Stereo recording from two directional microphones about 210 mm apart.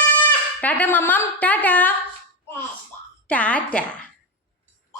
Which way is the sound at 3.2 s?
5° left (ahead or behind).